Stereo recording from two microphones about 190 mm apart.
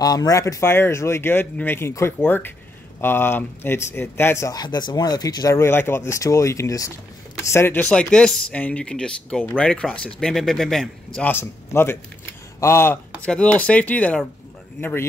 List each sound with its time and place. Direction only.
0.0 s speech: 20° left (ahead or behind)